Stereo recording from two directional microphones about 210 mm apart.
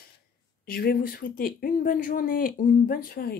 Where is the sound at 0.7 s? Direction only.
45° left (ahead or behind).